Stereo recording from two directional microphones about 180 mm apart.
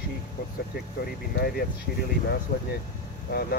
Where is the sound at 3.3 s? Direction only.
60° left (ahead or behind).